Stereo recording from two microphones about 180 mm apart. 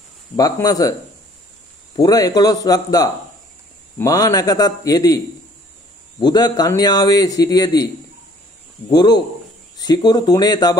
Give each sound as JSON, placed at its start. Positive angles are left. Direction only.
{"t": 0.4, "sound": "a man's voice", "side_deg": 20}
{"t": 2.0, "sound": "a man's voice", "side_deg": 20}
{"t": 8.9, "sound": "a man's voice", "side_deg": 25}